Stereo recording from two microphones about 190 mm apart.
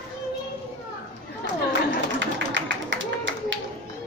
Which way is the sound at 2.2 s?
75° right (ahead or behind).